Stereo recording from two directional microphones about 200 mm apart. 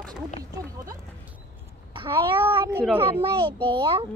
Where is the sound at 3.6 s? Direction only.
25° right (ahead or behind).